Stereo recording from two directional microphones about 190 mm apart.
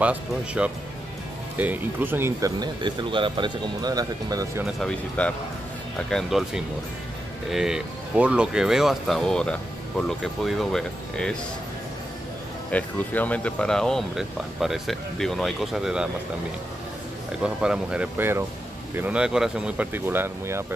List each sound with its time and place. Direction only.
0.0 s speech: 5° right (ahead or behind)
4.6 s speech: centre (ahead or behind)
12.7 s speech: 10° left (ahead or behind)
17.4 s speech: 5° right (ahead or behind)